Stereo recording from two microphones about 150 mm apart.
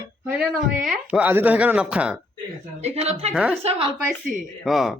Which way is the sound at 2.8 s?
45° right (ahead or behind).